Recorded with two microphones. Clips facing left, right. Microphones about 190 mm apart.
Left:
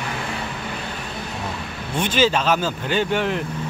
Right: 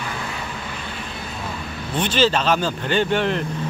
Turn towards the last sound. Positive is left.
turn(degrees=10)  # may be behind; listen again after turning